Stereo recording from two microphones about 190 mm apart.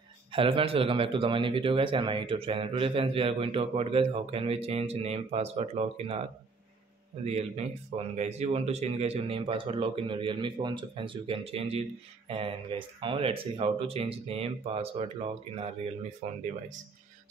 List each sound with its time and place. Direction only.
0.3 s speech: 30° right (ahead or behind)
7.2 s speech: 35° right (ahead or behind)